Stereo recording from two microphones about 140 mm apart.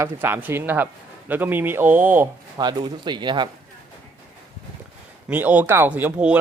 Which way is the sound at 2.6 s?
30° right (ahead or behind).